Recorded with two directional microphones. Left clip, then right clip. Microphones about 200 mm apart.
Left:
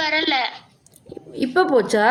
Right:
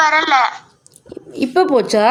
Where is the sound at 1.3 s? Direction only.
30° right (ahead or behind).